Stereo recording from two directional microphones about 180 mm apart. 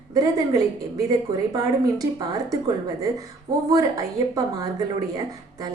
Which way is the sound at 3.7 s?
20° right (ahead or behind).